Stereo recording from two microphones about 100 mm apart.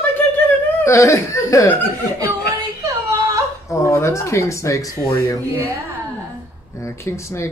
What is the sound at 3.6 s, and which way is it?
Speech, 30° left (ahead or behind).